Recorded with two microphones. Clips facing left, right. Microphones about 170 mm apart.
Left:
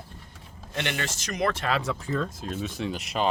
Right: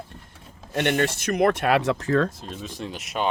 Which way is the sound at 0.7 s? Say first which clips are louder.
Right 8 dB; 55° right (ahead or behind).